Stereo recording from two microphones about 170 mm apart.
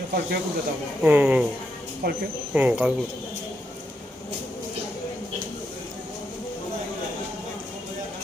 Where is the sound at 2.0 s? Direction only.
60° right (ahead or behind).